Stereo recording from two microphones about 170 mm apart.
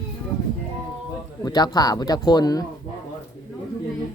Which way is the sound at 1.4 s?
25° left (ahead or behind).